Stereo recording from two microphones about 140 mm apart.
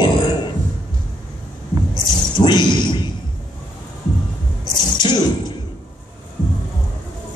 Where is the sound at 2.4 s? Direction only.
30° left (ahead or behind).